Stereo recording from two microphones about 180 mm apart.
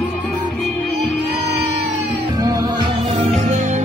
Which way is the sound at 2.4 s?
20° right (ahead or behind).